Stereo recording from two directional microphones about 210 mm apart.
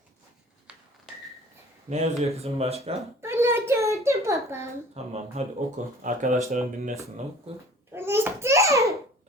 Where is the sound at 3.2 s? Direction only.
10° right (ahead or behind).